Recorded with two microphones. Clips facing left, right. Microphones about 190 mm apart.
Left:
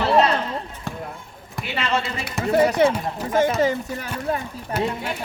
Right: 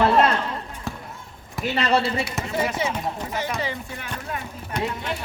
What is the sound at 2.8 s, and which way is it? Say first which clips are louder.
Speech: left 7 dB; 60° left (ahead or behind).